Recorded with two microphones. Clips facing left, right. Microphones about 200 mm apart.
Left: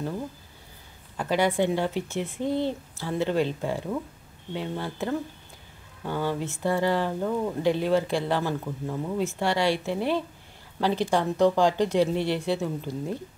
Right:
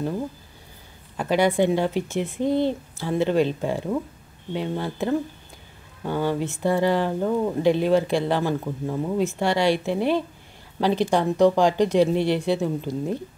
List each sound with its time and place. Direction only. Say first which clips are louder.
1.1 s speech: right 4 dB; 15° right (ahead or behind)